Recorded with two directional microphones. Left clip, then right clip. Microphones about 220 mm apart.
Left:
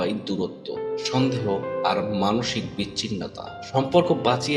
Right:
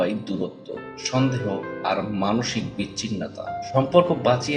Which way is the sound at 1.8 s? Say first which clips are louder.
Even; 35° left (ahead or behind).